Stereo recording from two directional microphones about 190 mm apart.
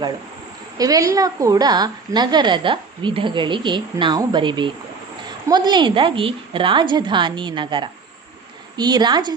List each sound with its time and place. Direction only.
0.8 s a woman's voice: 20° right (ahead or behind)